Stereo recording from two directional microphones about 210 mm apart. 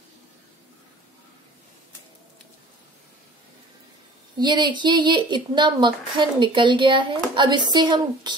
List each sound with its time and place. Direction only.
4.4 s speech: 20° right (ahead or behind)